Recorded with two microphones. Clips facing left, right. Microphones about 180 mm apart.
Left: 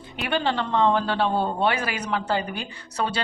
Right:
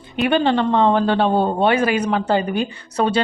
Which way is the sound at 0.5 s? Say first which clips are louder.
Right 6 dB; 55° right (ahead or behind).